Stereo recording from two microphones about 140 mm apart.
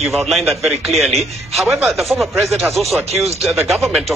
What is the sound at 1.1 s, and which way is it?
Speech, 45° right (ahead or behind).